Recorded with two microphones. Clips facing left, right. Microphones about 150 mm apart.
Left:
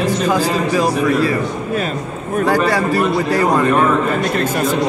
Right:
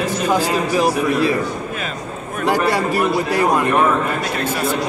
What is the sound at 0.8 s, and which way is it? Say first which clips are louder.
Speech: left 1 dB; 20° right (ahead or behind).